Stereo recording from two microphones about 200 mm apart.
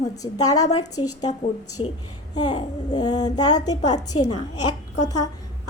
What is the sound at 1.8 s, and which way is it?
Speech, 30° left (ahead or behind).